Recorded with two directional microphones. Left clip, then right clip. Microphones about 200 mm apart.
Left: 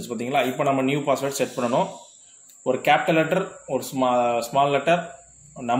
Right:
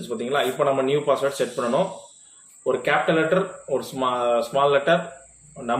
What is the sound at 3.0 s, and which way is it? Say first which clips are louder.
A man's voice: right 1 dB; 45° left (ahead or behind).